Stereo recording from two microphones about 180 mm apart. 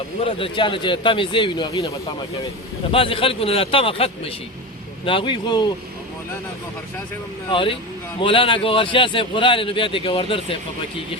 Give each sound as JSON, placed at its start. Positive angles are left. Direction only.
{"t": 0.3, "sound": "a man's voice", "side_deg": 30}
{"t": 2.9, "sound": "a man's voice", "side_deg": 30}
{"t": 7.5, "sound": "a man's voice", "side_deg": 30}